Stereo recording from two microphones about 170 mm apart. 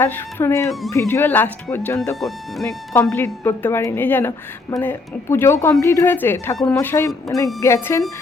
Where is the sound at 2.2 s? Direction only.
Centre (ahead or behind).